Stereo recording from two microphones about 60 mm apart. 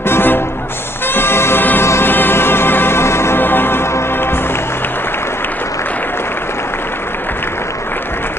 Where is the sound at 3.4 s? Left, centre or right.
Left.